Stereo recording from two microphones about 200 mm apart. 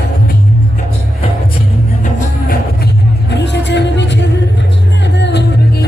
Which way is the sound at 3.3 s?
60° left (ahead or behind).